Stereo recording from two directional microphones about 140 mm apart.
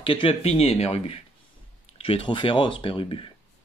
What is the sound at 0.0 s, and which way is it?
Speech, 40° left (ahead or behind).